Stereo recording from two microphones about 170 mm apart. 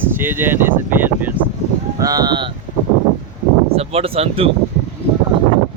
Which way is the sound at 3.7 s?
35° right (ahead or behind).